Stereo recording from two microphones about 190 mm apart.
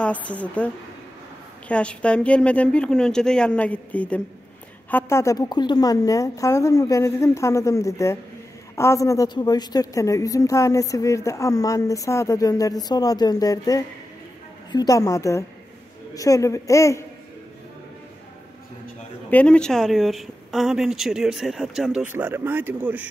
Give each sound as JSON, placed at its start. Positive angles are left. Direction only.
{"t": 0.0, "sound": "a woman's voice", "side_deg": 5}
{"t": 1.7, "sound": "a woman's voice", "side_deg": 5}
{"t": 19.3, "sound": "speech", "side_deg": 5}